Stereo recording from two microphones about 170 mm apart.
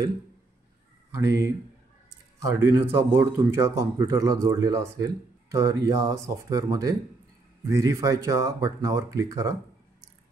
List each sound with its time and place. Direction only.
1.1 s speech: 20° right (ahead or behind)